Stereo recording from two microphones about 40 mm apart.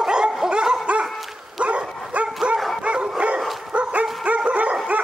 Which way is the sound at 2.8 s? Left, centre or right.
Right.